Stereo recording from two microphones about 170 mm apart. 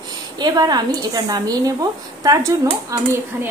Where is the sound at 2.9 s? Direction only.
20° right (ahead or behind).